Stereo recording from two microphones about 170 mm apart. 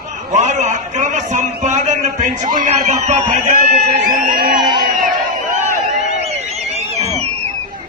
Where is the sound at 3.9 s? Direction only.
55° right (ahead or behind).